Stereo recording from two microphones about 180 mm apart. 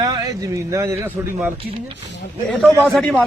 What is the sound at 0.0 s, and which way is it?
Speech, 15° right (ahead or behind).